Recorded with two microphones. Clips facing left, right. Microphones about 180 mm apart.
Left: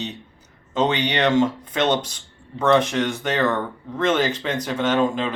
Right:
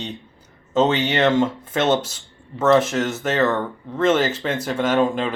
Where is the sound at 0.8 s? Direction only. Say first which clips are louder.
Right 3 dB; 5° right (ahead or behind).